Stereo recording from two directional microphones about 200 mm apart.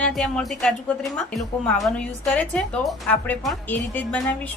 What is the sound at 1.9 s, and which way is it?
A woman's voice, 5° left (ahead or behind).